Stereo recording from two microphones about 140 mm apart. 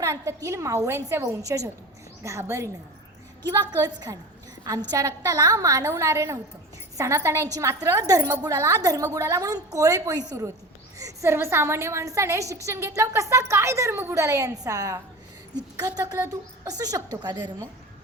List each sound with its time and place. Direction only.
0.0 s a woman's voice: 20° right (ahead or behind)